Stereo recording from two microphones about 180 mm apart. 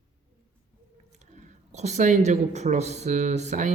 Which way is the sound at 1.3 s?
40° right (ahead or behind).